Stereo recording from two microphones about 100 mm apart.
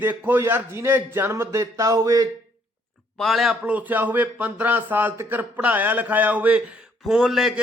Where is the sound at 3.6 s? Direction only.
15° right (ahead or behind).